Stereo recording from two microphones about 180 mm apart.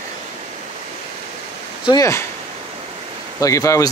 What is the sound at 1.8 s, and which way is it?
Speech, 20° left (ahead or behind).